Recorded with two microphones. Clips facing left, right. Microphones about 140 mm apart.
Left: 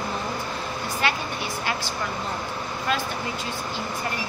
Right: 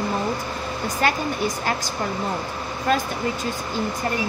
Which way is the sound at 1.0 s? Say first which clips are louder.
Right 4 dB; 45° right (ahead or behind).